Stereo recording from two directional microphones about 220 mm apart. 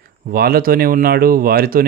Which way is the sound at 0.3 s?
45° right (ahead or behind).